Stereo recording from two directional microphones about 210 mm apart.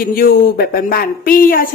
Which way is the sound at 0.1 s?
45° left (ahead or behind).